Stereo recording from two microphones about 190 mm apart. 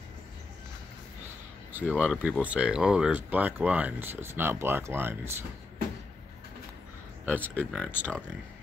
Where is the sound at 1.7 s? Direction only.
5° right (ahead or behind).